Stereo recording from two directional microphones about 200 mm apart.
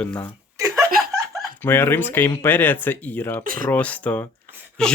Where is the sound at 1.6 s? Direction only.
10° left (ahead or behind).